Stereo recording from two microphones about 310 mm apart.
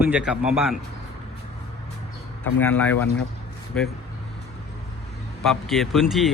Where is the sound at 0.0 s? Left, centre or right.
Centre.